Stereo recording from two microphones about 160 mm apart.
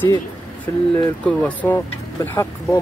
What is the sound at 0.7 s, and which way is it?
Speech, 15° left (ahead or behind).